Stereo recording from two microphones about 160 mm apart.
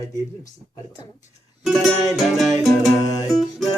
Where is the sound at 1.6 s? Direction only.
Centre (ahead or behind).